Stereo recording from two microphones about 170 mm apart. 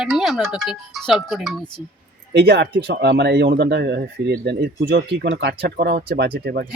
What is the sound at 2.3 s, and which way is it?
Speech, 90° right.